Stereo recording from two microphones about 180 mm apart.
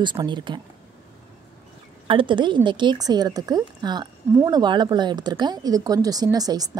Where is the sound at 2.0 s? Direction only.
30° right (ahead or behind).